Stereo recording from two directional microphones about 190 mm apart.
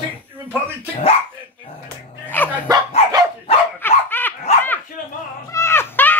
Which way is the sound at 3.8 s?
10° left (ahead or behind).